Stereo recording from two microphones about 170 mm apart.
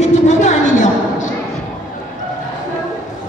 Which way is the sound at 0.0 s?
45° left (ahead or behind).